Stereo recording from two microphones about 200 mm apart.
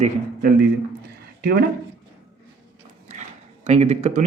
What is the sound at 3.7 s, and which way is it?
Speech, 35° right (ahead or behind).